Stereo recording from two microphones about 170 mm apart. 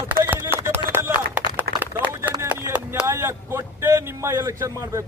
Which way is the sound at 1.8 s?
10° right (ahead or behind).